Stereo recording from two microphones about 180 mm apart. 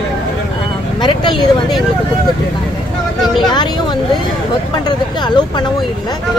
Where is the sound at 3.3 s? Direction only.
25° left (ahead or behind).